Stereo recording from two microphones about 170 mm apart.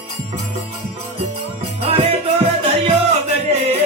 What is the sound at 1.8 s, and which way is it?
Music, 35° right (ahead or behind).